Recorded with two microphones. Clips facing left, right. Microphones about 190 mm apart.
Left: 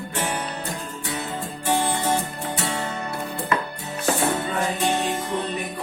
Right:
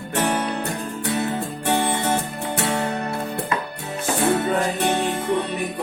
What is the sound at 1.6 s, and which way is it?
Music, 65° right (ahead or behind).